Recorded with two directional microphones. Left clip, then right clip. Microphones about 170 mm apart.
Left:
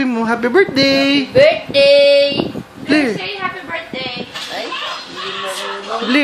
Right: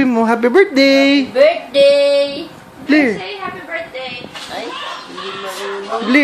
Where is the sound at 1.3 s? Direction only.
10° left (ahead or behind).